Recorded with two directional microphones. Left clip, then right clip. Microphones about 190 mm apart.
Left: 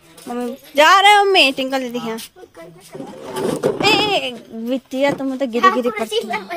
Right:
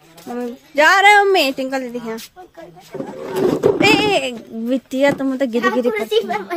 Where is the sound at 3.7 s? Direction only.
25° right (ahead or behind).